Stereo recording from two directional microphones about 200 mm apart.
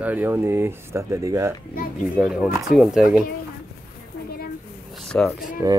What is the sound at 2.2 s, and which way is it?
Speech, 5° right (ahead or behind).